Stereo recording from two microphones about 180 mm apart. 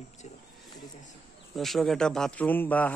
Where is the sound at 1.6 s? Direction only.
Centre (ahead or behind).